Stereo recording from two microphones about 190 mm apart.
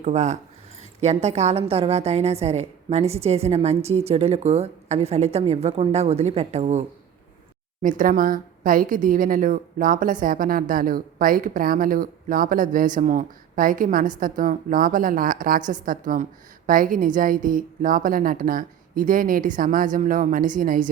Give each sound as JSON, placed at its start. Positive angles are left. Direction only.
{"t": 0.0, "sound": "a woman's voice", "side_deg": -35}